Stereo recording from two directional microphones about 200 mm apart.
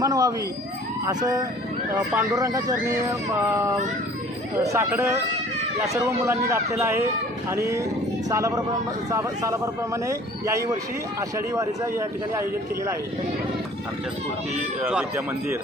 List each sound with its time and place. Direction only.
0.0 s a sound: 20° right (ahead or behind)
1.0 s speech: 20° right (ahead or behind)
14.8 s speech: 10° right (ahead or behind)